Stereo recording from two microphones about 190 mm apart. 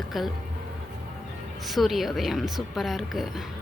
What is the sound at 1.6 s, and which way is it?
Speech, centre (ahead or behind).